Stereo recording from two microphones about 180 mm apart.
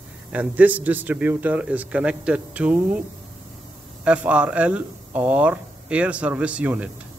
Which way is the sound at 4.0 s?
5° right (ahead or behind).